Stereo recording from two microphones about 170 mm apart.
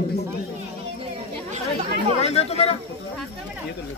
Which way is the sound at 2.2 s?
40° left (ahead or behind).